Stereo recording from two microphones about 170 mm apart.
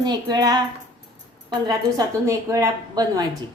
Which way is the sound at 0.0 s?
25° right (ahead or behind).